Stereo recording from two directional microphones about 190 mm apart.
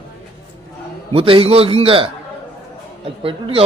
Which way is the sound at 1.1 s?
30° right (ahead or behind).